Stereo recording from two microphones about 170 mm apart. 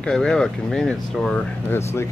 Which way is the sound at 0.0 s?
5° left (ahead or behind).